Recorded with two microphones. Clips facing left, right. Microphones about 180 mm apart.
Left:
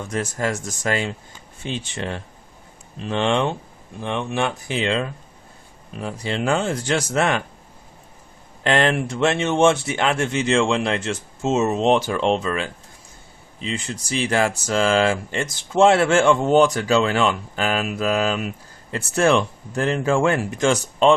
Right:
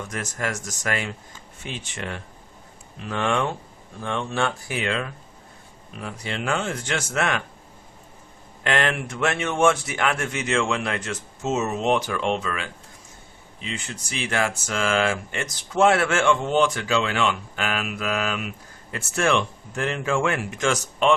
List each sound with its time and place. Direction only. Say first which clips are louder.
0.1 s speech: left 8 dB; 30° left (ahead or behind)
8.6 s speech: left 5 dB; 30° left (ahead or behind)